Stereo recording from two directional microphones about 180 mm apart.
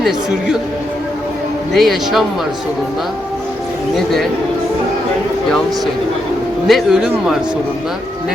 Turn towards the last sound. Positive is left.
turn(degrees=-5)  # may be behind; listen again after turning